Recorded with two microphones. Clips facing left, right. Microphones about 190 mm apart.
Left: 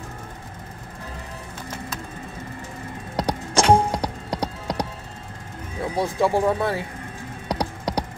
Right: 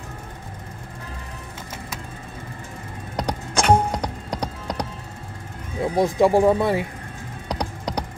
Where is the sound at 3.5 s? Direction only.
25° left (ahead or behind).